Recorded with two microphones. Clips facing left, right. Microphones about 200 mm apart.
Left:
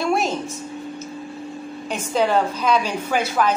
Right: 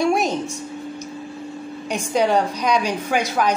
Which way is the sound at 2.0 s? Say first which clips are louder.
Right 1 dB; 15° right (ahead or behind).